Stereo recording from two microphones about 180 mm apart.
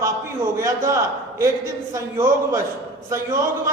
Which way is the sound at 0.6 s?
15° right (ahead or behind).